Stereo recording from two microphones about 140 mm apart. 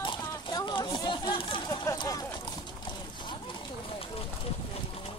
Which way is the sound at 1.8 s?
25° left (ahead or behind).